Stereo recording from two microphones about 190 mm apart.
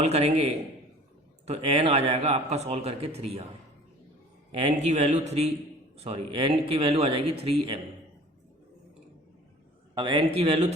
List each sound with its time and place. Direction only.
0.0 s a man's voice: 35° right (ahead or behind)
4.5 s a man's voice: 35° right (ahead or behind)
9.9 s a man's voice: 25° right (ahead or behind)